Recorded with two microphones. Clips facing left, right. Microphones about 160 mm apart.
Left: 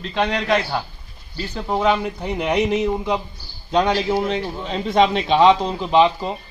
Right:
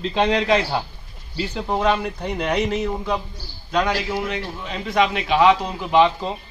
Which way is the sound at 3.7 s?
25° left (ahead or behind).